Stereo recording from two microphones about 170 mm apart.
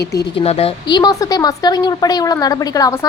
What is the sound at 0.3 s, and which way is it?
A woman's voice, 35° left (ahead or behind).